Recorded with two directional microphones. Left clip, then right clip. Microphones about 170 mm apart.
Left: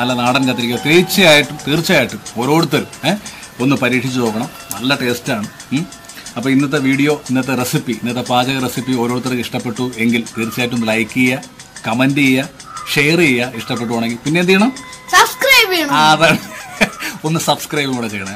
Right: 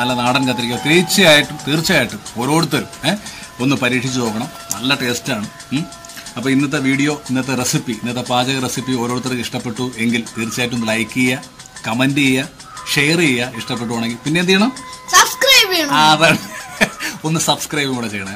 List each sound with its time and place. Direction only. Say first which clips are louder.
0.0 s speech: left 1 dB; 5° left (ahead or behind)
15.0 s music: left 1 dB; 20° right (ahead or behind)
15.9 s a man's voice: even; 10° left (ahead or behind)